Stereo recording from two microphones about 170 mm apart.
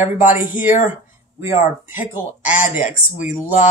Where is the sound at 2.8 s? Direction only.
45° left (ahead or behind).